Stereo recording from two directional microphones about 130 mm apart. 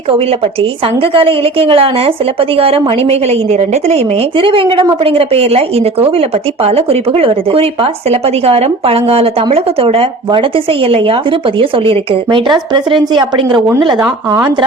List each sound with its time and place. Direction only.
0.2 s a woman's voice: 45° right (ahead or behind)
14.3 s speech: 20° right (ahead or behind)